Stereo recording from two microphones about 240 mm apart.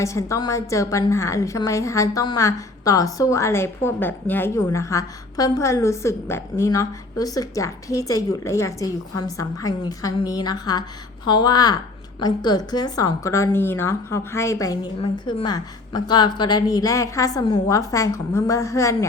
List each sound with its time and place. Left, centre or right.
0.0 s a woman's voice: centre